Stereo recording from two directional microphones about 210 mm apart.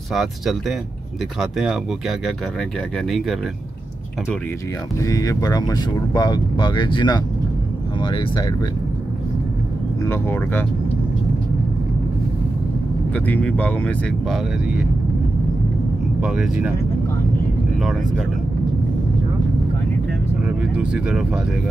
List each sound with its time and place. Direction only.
0.1 s speech: centre (ahead or behind)
5.0 s speech: 15° left (ahead or behind)
10.0 s speech: 10° left (ahead or behind)
13.1 s speech: 5° left (ahead or behind)
16.2 s speech: 5° right (ahead or behind)
20.4 s speech: 5° right (ahead or behind)